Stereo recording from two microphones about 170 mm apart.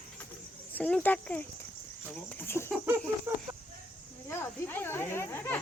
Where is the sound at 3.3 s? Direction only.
20° right (ahead or behind).